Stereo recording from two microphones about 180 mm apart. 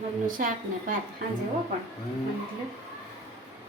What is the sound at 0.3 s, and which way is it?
Speech, 50° right (ahead or behind).